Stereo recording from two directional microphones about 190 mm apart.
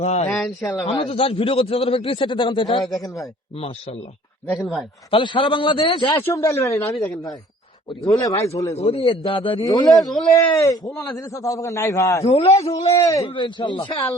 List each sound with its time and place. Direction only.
0.0 s a man's voice: 35° left (ahead or behind)
0.3 s a man's voice: 10° left (ahead or behind)
0.9 s a man's voice: 30° left (ahead or behind)
4.4 s speech: 5° left (ahead or behind)
5.1 s a man's voice: 25° left (ahead or behind)
6.2 s a man's voice: 15° left (ahead or behind)
10.0 s speech: centre (ahead or behind)
10.3 s a man's voice: 15° left (ahead or behind)
12.2 s a man's voice: 35° left (ahead or behind)
13.0 s a man's voice: 15° left (ahead or behind)